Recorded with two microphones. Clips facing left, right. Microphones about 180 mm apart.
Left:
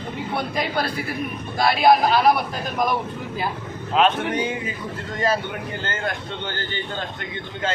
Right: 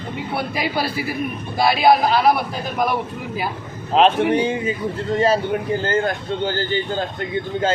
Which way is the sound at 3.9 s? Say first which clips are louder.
Right 4 dB; 35° right (ahead or behind).